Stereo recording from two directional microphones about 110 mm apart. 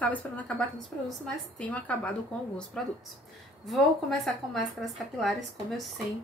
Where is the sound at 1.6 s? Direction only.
10° left (ahead or behind).